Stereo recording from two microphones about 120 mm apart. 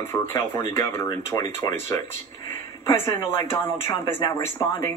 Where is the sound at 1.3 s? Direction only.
35° left (ahead or behind).